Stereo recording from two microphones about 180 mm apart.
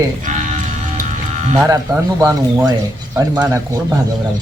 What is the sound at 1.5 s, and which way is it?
Speech, 20° right (ahead or behind).